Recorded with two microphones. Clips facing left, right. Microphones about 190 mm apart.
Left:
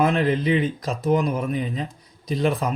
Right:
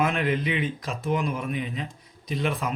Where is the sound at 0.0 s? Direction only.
35° left (ahead or behind).